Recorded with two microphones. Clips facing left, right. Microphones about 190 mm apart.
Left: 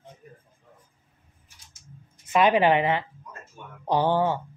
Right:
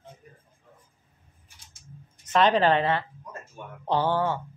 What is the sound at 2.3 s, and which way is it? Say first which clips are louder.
A woman's voice: left 1 dB; 10° left (ahead or behind).